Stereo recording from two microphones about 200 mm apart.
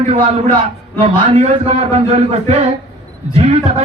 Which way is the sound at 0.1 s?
30° right (ahead or behind).